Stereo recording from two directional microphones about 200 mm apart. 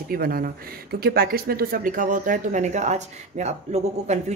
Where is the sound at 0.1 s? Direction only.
45° right (ahead or behind).